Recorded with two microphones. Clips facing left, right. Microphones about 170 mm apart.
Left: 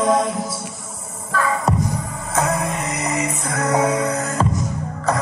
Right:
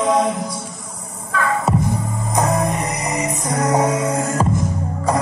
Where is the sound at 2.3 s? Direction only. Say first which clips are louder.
Right 2 dB; 15° right (ahead or behind).